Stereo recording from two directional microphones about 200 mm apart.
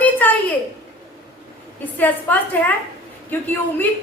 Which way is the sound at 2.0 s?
10° left (ahead or behind).